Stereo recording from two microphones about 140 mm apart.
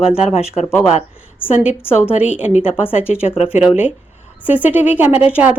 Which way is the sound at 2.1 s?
10° right (ahead or behind).